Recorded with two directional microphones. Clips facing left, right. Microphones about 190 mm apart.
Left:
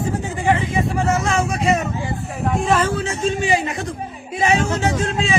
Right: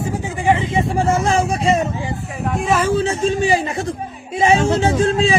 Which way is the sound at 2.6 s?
5° right (ahead or behind).